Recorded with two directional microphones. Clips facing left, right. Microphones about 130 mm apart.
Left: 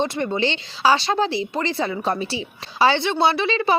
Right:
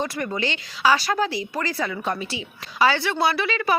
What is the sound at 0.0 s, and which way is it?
Speech, 25° left (ahead or behind).